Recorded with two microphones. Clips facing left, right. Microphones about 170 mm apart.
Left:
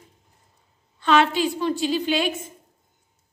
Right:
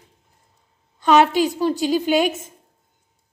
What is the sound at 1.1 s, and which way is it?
A woman's voice, 40° right (ahead or behind).